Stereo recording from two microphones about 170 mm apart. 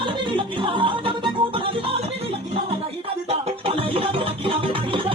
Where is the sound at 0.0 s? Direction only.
30° right (ahead or behind).